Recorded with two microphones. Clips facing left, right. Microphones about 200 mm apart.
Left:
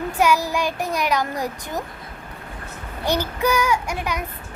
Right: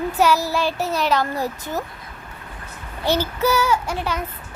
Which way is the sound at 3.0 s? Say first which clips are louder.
Right 1 dB; 15° left (ahead or behind).